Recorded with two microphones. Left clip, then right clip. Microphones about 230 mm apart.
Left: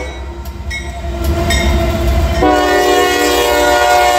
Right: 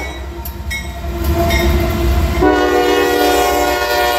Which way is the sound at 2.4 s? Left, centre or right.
Left.